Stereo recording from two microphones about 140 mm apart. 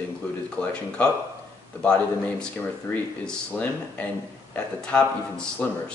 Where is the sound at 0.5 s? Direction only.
10° left (ahead or behind).